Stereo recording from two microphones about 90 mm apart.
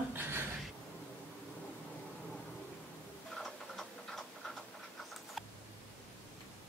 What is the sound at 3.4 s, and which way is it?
Tick-tock, 5° left (ahead or behind).